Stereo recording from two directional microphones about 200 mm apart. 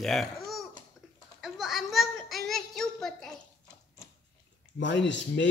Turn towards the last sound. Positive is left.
turn(degrees=65)  # may be behind; listen again after turning